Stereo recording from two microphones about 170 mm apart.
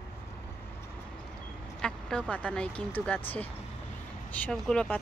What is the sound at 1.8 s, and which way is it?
Speech, 5° left (ahead or behind).